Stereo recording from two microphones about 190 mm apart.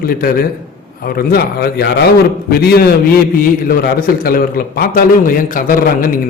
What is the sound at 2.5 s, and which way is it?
A man's voice, 55° left (ahead or behind).